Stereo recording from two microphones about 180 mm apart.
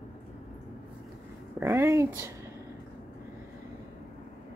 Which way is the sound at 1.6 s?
15° right (ahead or behind).